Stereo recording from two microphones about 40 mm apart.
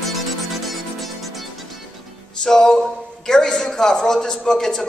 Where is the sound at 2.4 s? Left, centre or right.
Centre.